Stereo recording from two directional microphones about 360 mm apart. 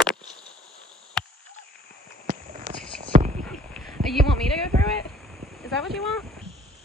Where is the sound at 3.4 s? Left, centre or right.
Centre.